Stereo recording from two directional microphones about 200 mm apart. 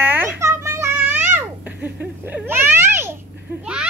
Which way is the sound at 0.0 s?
10° right (ahead or behind).